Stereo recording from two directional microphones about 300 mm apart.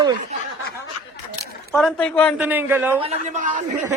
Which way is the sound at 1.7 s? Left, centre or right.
Centre.